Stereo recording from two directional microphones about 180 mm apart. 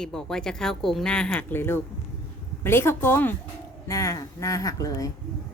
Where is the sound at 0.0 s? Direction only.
5° left (ahead or behind); by 5.1 s 20° left (ahead or behind).